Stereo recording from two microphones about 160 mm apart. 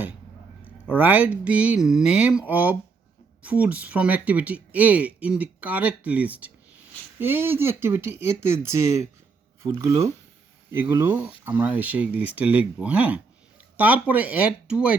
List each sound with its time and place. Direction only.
0.9 s speech: 10° right (ahead or behind)